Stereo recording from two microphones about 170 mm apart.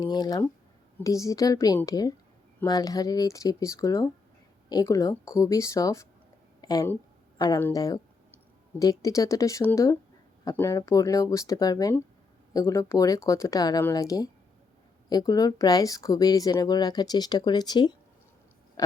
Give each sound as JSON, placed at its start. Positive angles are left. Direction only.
{"t": 0.0, "sound": "speech", "side_deg": 25}
{"t": 6.6, "sound": "a sound", "side_deg": 25}
{"t": 7.3, "sound": "speech", "side_deg": 25}